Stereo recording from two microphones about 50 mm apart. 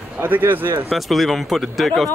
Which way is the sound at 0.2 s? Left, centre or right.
Right.